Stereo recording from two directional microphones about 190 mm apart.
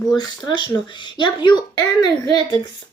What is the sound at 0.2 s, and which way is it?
Speech, 25° left (ahead or behind).